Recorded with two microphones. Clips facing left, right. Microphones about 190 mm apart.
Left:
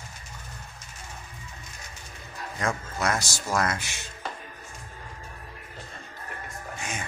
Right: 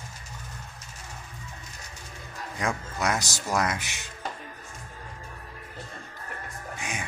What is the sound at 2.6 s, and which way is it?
Speech, 15° right (ahead or behind).